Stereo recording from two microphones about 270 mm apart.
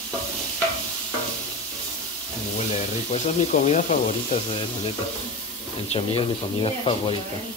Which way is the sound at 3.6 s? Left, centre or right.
Left.